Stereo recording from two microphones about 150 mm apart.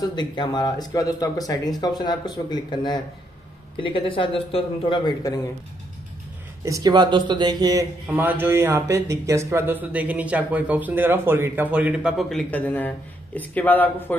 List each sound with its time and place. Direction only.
0.0 s a man's voice: 30° left (ahead or behind)
6.6 s speech: 25° right (ahead or behind)
8.1 s speech: 15° right (ahead or behind); by 14.1 s 10° left (ahead or behind)